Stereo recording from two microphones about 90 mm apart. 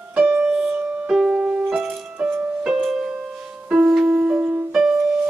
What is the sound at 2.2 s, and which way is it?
Music, 20° right (ahead or behind).